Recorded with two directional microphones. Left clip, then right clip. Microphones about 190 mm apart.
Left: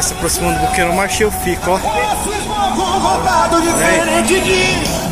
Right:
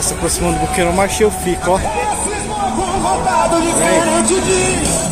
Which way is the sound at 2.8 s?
35° right (ahead or behind).